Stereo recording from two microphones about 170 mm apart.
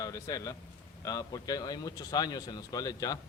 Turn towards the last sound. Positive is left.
turn(degrees=20)  # may be behind; listen again after turning